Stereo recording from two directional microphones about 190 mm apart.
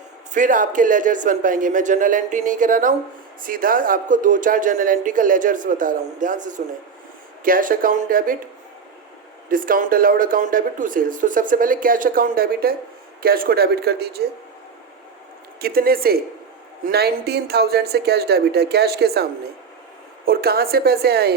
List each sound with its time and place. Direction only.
0.3 s speech: 45° right (ahead or behind)
9.5 s speech: 45° right (ahead or behind)
15.6 s speech: 50° right (ahead or behind)